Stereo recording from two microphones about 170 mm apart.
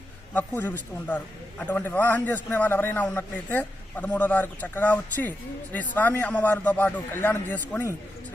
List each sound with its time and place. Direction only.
0.3 s a man's voice: 10° left (ahead or behind)